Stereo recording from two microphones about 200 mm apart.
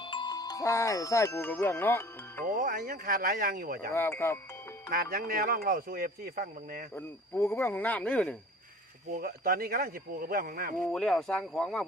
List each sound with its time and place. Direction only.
0.0 s speech: 25° left (ahead or behind)
2.4 s speech: 45° right (ahead or behind)
3.9 s speech: 10° left (ahead or behind)
4.9 s speech: 45° right (ahead or behind)
6.9 s speech: 10° left (ahead or behind)
9.0 s speech: 45° right (ahead or behind)
10.9 s speech: centre (ahead or behind)